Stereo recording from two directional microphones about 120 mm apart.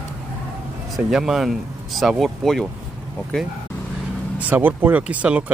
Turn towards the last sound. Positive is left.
turn(degrees=-10)  # may be behind; listen again after turning